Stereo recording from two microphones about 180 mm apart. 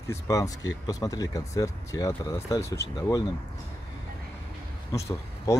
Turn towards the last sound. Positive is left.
turn(degrees=15)  # may be behind; listen again after turning